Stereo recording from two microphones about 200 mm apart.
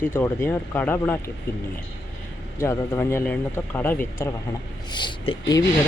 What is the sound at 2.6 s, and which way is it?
Speech, 10° left (ahead or behind).